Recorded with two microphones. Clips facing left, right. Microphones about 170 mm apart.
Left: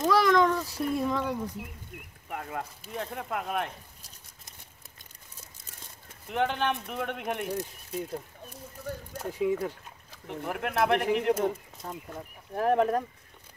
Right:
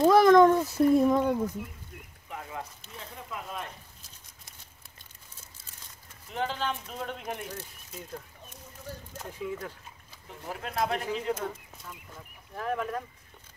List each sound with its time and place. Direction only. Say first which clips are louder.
0.0 s a sound: right 5 dB; 50° right (ahead or behind)
0.6 s speech: right 7 dB; 25° right (ahead or behind)
2.2 s a sound: left 3 dB; 55° left (ahead or behind)
3.0 s speech: left 7 dB; 60° left (ahead or behind)
6.2 s speech: left 4 dB; 65° left (ahead or behind)
9.3 s speech: left 8 dB; 15° left (ahead or behind)
10.2 s speech: left 6 dB; 65° left (ahead or behind)
11.8 s speech: left 8 dB; 40° left (ahead or behind)